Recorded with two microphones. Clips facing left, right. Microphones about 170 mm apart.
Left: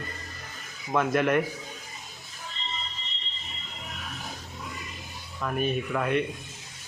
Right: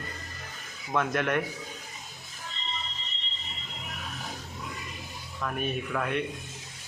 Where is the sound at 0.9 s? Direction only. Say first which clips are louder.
Left 4 dB; centre (ahead or behind).